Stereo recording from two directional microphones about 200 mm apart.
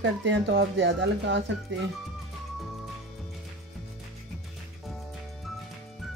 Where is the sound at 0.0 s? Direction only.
65° right (ahead or behind).